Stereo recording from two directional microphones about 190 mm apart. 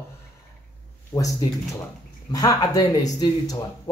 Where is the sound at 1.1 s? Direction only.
20° left (ahead or behind).